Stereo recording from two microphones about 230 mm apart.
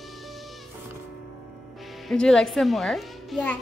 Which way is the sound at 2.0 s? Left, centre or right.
Centre.